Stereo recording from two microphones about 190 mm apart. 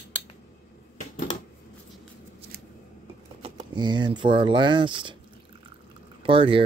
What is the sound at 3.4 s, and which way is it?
Speech, 25° right (ahead or behind).